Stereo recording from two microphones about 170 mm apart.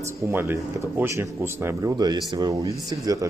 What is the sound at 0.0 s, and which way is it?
A man's voice, 15° right (ahead or behind).